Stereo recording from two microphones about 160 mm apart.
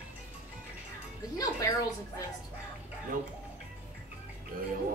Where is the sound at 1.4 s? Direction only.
20° left (ahead or behind).